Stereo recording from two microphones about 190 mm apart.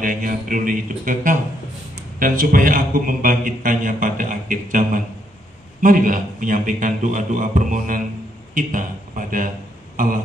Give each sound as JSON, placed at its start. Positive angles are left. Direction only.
{"t": 0.0, "sound": "a man's voice", "side_deg": -45}